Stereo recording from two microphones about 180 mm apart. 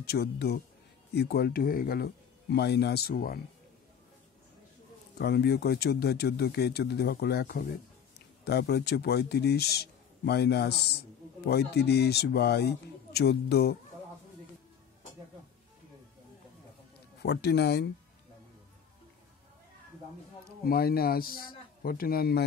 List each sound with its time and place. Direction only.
0.0 s speech: 65° left (ahead or behind)
2.5 s speech: 65° left (ahead or behind)
5.2 s speech: 65° left (ahead or behind)
17.2 s speech: 70° left (ahead or behind)
20.6 s speech: 55° left (ahead or behind)